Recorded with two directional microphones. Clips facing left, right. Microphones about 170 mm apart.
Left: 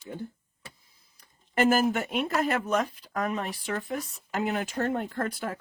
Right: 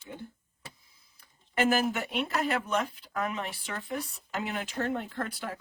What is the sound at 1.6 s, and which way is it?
Speech, 40° left (ahead or behind).